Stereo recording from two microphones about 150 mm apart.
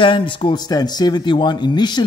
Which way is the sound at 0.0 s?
35° left (ahead or behind).